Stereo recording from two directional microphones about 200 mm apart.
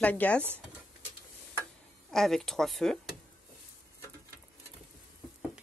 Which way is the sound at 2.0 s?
Centre (ahead or behind).